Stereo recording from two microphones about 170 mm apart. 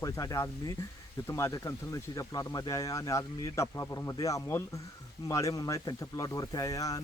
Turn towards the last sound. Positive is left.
turn(degrees=20)  # may be behind; listen again after turning